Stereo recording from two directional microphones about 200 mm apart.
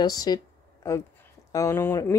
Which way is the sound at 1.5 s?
15° left (ahead or behind).